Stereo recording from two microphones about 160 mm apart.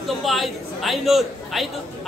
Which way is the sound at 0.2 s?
Centre (ahead or behind).